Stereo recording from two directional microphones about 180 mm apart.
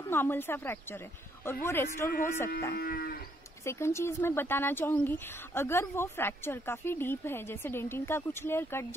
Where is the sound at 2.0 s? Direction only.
50° left (ahead or behind).